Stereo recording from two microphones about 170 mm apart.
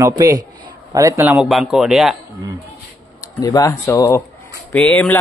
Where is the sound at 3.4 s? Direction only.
20° left (ahead or behind).